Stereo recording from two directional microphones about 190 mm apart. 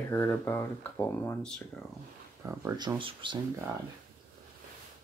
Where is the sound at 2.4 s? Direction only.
20° right (ahead or behind).